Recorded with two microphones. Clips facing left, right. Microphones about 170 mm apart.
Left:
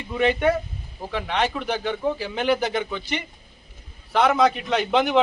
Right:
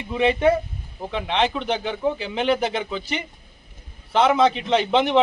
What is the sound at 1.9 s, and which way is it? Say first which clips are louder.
A man's voice: right 1 dB; centre (ahead or behind).